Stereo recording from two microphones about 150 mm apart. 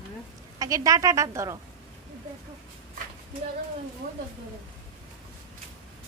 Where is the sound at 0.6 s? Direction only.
20° right (ahead or behind).